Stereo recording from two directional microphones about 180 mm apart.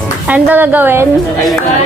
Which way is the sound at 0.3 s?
10° right (ahead or behind).